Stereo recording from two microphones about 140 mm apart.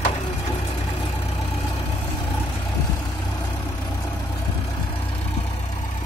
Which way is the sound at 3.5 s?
25° left (ahead or behind).